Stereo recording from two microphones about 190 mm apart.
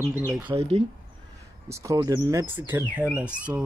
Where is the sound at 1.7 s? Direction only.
15° right (ahead or behind).